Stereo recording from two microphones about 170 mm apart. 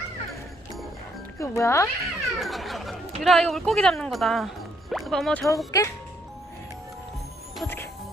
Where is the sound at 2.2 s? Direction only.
Centre (ahead or behind).